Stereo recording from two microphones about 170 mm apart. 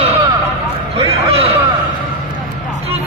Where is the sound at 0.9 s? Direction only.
35° right (ahead or behind).